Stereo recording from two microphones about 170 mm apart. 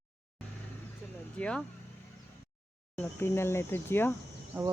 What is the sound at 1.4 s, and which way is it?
Speech, 5° left (ahead or behind).